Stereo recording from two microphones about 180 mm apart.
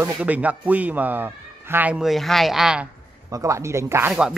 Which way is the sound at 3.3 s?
15° right (ahead or behind).